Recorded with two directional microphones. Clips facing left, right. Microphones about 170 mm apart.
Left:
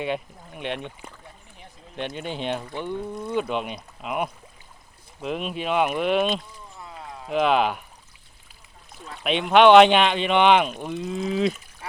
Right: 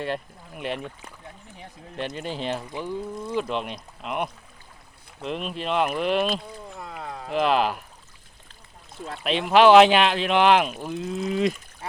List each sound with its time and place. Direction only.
0.0 s speech: centre (ahead or behind)
2.0 s speech: centre (ahead or behind)
6.7 s a sound: 70° right (ahead or behind)
7.3 s speech: centre (ahead or behind)
9.2 s speech: centre (ahead or behind)